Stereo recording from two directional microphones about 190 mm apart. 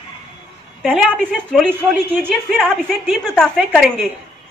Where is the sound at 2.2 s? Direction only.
5° left (ahead or behind).